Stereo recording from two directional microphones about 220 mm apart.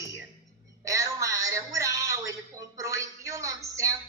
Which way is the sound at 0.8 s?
15° right (ahead or behind).